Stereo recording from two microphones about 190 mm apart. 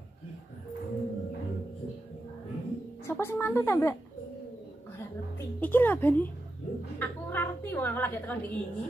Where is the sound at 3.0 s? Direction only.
15° left (ahead or behind).